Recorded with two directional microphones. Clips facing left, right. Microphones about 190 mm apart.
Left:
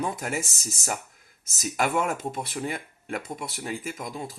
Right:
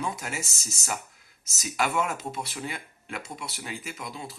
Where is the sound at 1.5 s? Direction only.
50° left (ahead or behind).